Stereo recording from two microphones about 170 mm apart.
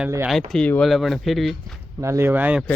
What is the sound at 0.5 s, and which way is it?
Speech, 5° left (ahead or behind).